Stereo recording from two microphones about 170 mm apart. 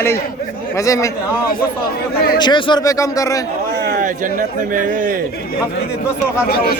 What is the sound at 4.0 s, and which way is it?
A man's voice, 50° right (ahead or behind).